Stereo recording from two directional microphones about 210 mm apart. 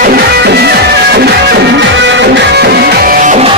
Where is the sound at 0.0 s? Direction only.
50° right (ahead or behind).